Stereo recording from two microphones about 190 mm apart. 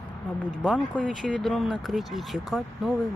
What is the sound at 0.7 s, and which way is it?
Speech, 5° left (ahead or behind).